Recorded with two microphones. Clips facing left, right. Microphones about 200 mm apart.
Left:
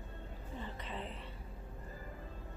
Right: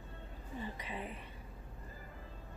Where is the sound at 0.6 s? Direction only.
10° right (ahead or behind).